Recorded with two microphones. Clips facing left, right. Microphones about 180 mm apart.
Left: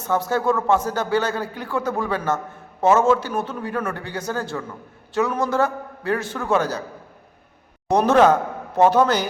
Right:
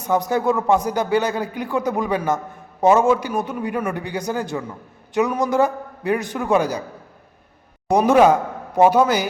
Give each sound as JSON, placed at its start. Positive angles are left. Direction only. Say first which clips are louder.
{"t": 0.0, "sound": "speech", "louder": "right 2 dB", "side_deg": -15}
{"t": 7.9, "sound": "speech", "louder": "right 1 dB", "side_deg": -10}